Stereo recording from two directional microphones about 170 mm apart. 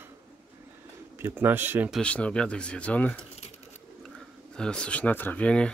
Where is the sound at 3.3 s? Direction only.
40° left (ahead or behind).